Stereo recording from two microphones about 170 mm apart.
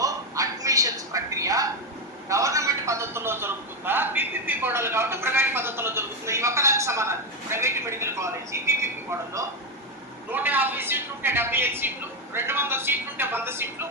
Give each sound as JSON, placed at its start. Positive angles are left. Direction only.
{"t": 0.0, "sound": "a sound", "side_deg": -20}
{"t": 2.3, "sound": "a man's voice", "side_deg": -20}
{"t": 10.3, "sound": "a woman's voice", "side_deg": -10}